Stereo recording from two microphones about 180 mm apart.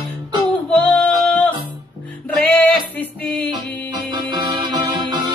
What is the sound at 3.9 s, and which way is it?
Music, 25° right (ahead or behind).